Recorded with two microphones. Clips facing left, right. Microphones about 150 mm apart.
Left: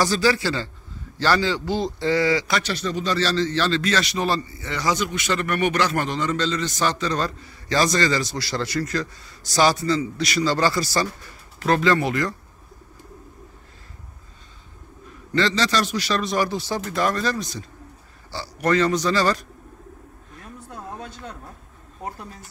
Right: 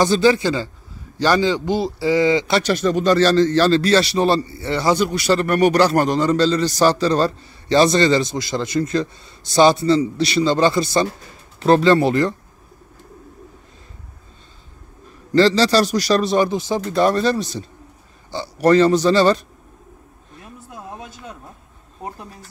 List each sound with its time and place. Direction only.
0.0 s a man's voice: 20° right (ahead or behind)
2.6 s a man's voice: 50° right (ahead or behind); by 12.4 s 30° right (ahead or behind)
15.3 s a man's voice: 35° right (ahead or behind)
16.4 s a man's voice: 20° right (ahead or behind)
17.0 s a man's voice: 30° right (ahead or behind)
20.7 s a sound: 10° right (ahead or behind)